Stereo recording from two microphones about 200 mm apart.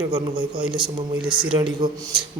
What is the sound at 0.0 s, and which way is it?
Speech, 20° right (ahead or behind).